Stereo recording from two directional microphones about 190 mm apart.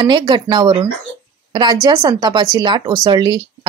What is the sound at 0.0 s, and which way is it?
Speech, 25° right (ahead or behind).